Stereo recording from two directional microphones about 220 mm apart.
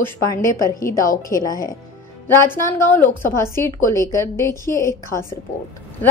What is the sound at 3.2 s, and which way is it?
A woman's voice, 10° left (ahead or behind).